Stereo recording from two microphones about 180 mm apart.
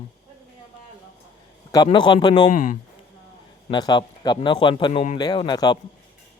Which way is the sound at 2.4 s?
45° left (ahead or behind).